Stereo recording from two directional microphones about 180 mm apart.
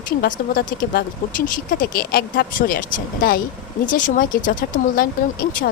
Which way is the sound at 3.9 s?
50° left (ahead or behind).